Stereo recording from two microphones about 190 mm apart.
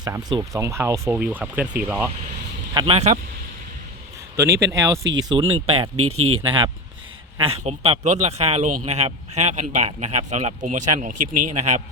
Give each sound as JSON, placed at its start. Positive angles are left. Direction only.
{"t": 0.0, "sound": "speech", "side_deg": -20}
{"t": 2.7, "sound": "speech", "side_deg": -30}
{"t": 4.4, "sound": "speech", "side_deg": -15}
{"t": 5.3, "sound": "speech", "side_deg": -25}